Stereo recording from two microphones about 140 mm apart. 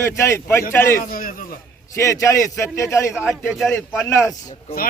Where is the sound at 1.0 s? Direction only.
85° left.